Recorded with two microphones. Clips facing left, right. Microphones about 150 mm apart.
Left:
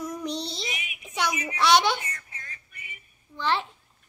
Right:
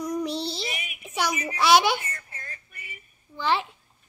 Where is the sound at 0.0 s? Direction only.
Centre (ahead or behind).